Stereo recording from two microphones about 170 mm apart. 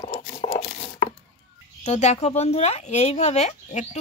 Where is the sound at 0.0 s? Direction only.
45° left (ahead or behind).